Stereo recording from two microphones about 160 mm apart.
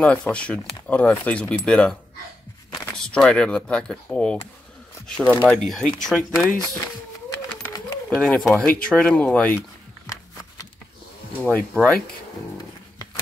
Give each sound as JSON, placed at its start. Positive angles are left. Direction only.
{"t": 0.0, "sound": "speech", "side_deg": 5}
{"t": 8.1, "sound": "speech", "side_deg": 5}
{"t": 10.0, "sound": "a sound", "side_deg": 20}
{"t": 11.4, "sound": "speech", "side_deg": 5}